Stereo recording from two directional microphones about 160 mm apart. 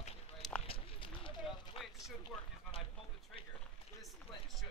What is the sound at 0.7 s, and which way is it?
Run, 35° left (ahead or behind).